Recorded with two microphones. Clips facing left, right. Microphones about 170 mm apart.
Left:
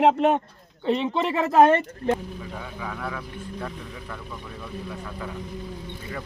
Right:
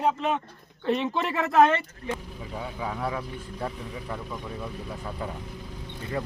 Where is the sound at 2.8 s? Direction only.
20° right (ahead or behind).